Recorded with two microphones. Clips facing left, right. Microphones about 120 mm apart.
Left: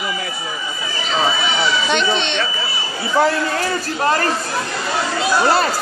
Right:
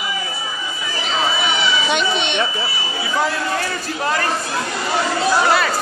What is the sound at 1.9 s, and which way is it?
Smoke detector, 5° right (ahead or behind).